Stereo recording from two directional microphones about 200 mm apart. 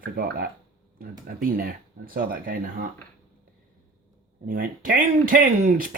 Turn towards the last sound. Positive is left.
turn(degrees=-45)  # may be behind; listen again after turning